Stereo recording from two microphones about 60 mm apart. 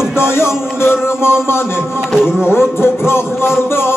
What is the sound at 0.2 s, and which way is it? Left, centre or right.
Speech, left.